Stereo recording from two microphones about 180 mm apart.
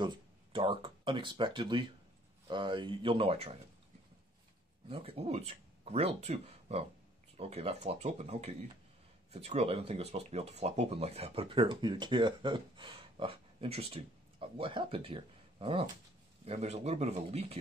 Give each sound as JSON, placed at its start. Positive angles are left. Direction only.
{"t": 0.0, "sound": "speech", "side_deg": -25}
{"t": 4.8, "sound": "speech", "side_deg": -30}